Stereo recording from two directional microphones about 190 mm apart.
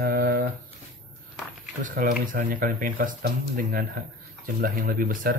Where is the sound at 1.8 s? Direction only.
45° right (ahead or behind).